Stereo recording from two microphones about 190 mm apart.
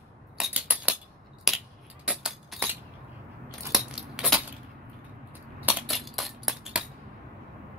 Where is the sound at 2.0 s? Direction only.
5° right (ahead or behind).